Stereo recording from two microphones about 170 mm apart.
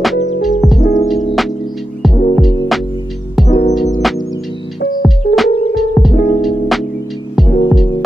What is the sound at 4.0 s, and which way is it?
Music, centre (ahead or behind).